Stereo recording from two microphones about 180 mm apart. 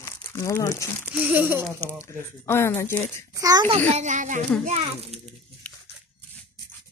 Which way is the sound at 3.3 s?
20° right (ahead or behind).